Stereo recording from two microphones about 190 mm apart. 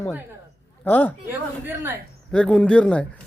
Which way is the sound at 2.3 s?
5° left (ahead or behind).